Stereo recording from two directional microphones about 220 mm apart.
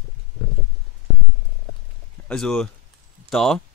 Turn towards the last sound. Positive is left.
turn(degrees=0)  # may be behind; listen again after turning